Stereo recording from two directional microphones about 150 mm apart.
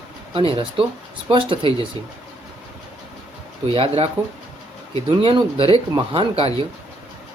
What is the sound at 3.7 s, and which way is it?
Speech, 40° right (ahead or behind).